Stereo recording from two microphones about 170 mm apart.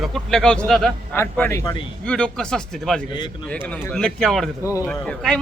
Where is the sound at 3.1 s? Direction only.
25° left (ahead or behind).